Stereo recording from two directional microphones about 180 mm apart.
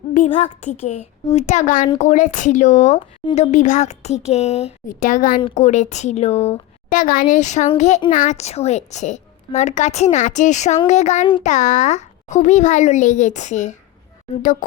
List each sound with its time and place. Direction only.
0.3 s a woman's voice: 35° left (ahead or behind)
5.4 s a woman's voice: 35° left (ahead or behind)